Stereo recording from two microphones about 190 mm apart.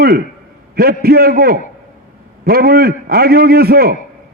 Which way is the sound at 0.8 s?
55° right (ahead or behind).